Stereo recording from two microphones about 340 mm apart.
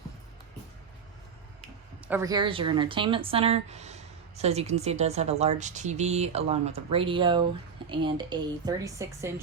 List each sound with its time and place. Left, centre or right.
2.0 s speech: centre